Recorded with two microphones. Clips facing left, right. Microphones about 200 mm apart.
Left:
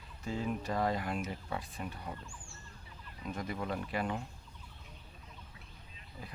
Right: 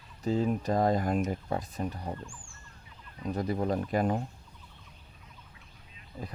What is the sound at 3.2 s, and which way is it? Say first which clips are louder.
Speech: right 8 dB; 35° right (ahead or behind).